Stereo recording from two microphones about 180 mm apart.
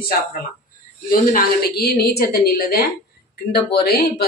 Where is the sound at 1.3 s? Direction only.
60° left (ahead or behind).